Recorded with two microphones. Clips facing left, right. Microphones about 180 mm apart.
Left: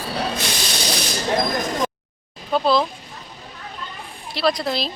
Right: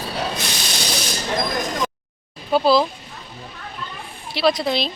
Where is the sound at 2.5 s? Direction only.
5° right (ahead or behind).